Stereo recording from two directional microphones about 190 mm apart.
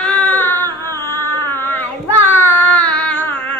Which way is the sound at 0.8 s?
15° left (ahead or behind).